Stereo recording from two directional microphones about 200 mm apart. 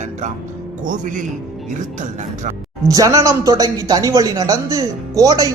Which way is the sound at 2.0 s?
35° right (ahead or behind).